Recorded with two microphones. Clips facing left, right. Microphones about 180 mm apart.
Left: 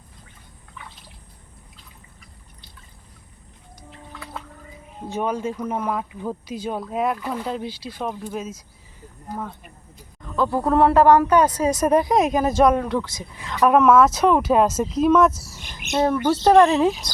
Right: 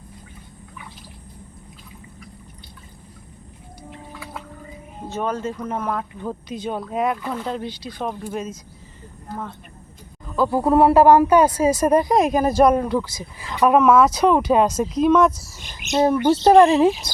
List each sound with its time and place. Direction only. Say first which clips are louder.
4.1 s whale vocalization: left 1 dB; 5° right (ahead or behind)
5.0 s speech: even; 15° left (ahead or behind)
10.2 s speech: right 2 dB; 5° right (ahead or behind)
15.9 s speech: right 3 dB; 20° right (ahead or behind)